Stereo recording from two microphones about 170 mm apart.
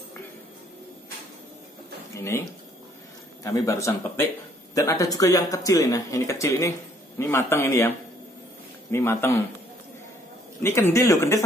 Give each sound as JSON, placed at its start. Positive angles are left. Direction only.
{"t": 2.1, "sound": "speech", "side_deg": 15}
{"t": 3.4, "sound": "speech", "side_deg": 20}
{"t": 8.9, "sound": "speech", "side_deg": 15}
{"t": 10.6, "sound": "speech", "side_deg": 15}